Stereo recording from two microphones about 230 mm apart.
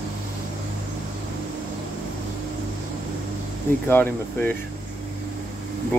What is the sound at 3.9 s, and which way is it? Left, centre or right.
Speech, centre.